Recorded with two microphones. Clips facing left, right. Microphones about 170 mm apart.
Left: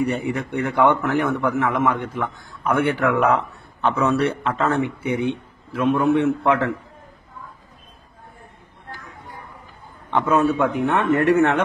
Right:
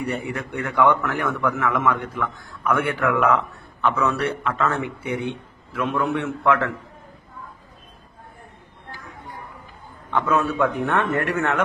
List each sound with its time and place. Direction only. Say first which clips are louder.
0.1 s a man's voice: left 4 dB; 20° left (ahead or behind)
10.1 s a man's voice: left 3 dB; 25° left (ahead or behind)